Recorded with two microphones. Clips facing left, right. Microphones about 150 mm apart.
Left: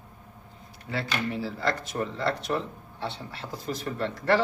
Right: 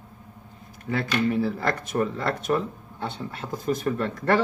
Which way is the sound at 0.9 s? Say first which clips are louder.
Right 6 dB; 50° right (ahead or behind).